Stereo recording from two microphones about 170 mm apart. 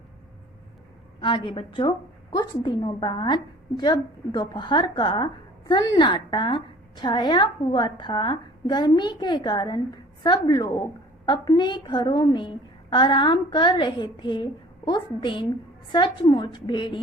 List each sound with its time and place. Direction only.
1.2 s a woman's voice: 30° left (ahead or behind)